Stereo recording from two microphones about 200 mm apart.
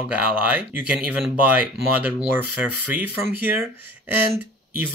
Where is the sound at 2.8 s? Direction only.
10° right (ahead or behind).